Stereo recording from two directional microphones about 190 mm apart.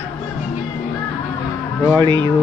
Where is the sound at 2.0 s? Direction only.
25° right (ahead or behind).